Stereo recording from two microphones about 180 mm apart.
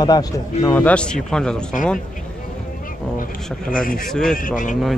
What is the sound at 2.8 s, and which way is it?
Speech, 50° left (ahead or behind).